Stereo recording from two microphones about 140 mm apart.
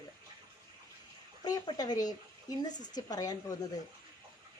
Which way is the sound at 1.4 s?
30° left (ahead or behind).